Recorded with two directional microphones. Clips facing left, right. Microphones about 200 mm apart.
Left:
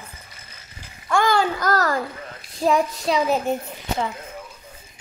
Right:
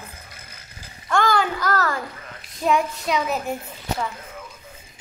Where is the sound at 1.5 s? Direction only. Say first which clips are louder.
Left 2 dB; 40° left (ahead or behind).